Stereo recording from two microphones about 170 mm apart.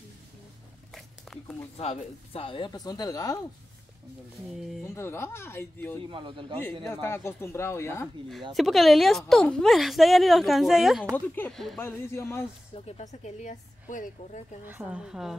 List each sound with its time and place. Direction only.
0.9 s a sound: centre (ahead or behind)
1.8 s speech: 35° left (ahead or behind); by 3.3 s 20° left (ahead or behind)
4.8 s speech: 15° left (ahead or behind)
6.0 s speech: 30° right (ahead or behind)
6.9 s speech: 15° left (ahead or behind)
8.5 s a woman's voice: centre (ahead or behind)
11.1 s a woman's voice: 10° left (ahead or behind)
11.8 s speech: 15° left (ahead or behind)
12.7 s a woman's voice: 40° left (ahead or behind)
14.7 s a woman's voice: 5° right (ahead or behind)